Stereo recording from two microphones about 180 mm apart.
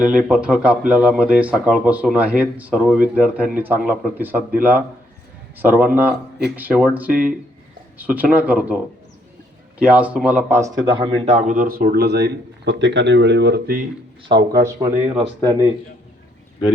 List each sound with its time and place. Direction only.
0.0 s speech: 5° right (ahead or behind); by 11.3 s 30° right (ahead or behind)
11.3 s speech: 45° right (ahead or behind); by 13.8 s 60° right (ahead or behind)
14.6 s speech: 15° right (ahead or behind)